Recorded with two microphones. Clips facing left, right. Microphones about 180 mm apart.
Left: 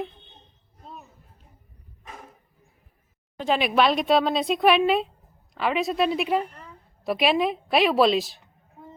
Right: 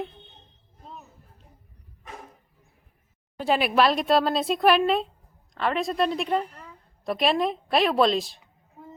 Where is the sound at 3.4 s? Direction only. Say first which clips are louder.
Even; 5° right (ahead or behind).